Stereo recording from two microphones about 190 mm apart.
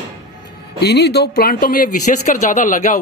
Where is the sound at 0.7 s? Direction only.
60° left (ahead or behind); by 3.0 s 40° left (ahead or behind).